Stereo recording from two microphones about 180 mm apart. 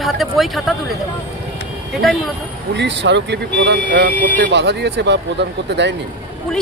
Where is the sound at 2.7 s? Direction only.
75° right (ahead or behind).